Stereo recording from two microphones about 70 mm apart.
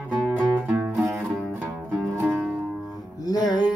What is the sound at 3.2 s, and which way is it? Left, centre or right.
Music, left.